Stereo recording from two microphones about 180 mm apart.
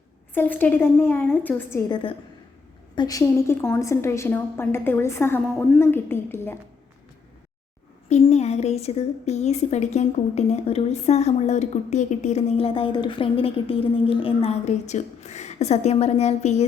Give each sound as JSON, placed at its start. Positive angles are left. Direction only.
{"t": 0.3, "sound": "a woman's voice", "side_deg": 10}
{"t": 2.9, "sound": "a woman's voice", "side_deg": 20}
{"t": 8.1, "sound": "a woman's voice", "side_deg": 35}